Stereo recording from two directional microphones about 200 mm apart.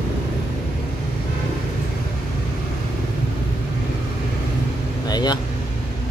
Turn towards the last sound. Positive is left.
turn(degrees=20)  # may be behind; listen again after turning